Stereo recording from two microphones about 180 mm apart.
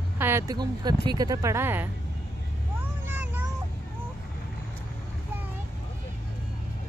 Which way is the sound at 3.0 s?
10° right (ahead or behind).